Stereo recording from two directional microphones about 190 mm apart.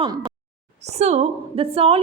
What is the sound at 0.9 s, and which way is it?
A woman's voice, 35° right (ahead or behind).